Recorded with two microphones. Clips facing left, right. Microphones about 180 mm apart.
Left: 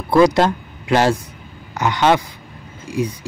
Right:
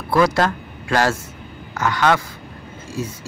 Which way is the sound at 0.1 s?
20° left (ahead or behind).